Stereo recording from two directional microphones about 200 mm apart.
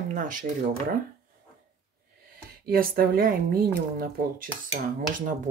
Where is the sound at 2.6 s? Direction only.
50° right (ahead or behind).